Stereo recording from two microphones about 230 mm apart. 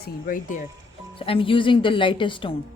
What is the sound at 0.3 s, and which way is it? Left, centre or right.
Speech, left.